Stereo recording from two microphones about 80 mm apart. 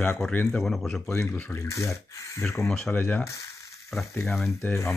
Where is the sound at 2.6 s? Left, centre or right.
Centre.